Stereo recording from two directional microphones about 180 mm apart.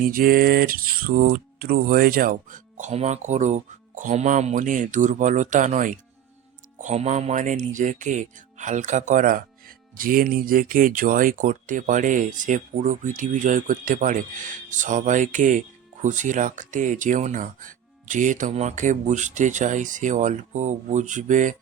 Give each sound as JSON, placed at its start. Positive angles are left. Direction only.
{"t": 0.0, "sound": "speech", "side_deg": -50}